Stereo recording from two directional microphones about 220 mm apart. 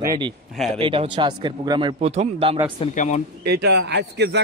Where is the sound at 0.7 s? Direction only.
25° right (ahead or behind).